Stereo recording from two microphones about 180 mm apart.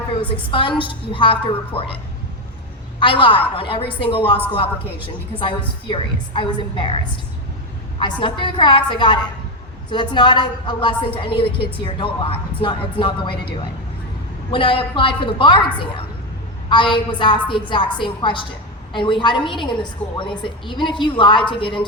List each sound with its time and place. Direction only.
0.5 s a woman's voice: 30° left (ahead or behind)
3.0 s a woman's voice: 30° left (ahead or behind)
14.5 s a woman's voice: 30° left (ahead or behind)